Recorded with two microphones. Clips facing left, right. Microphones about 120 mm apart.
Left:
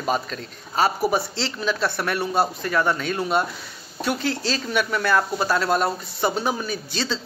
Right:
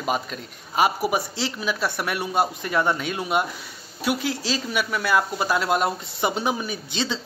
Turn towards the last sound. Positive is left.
turn(degrees=-20)  # may be behind; listen again after turning